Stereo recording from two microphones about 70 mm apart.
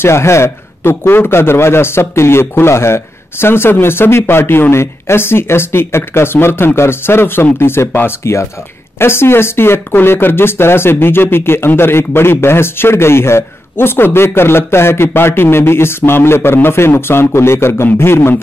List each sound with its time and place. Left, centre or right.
0.0 s speech: left